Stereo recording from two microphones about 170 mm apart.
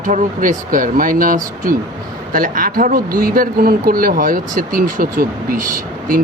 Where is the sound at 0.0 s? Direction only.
50° right (ahead or behind).